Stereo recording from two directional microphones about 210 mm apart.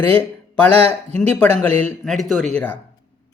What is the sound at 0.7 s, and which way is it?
Speech, 30° right (ahead or behind).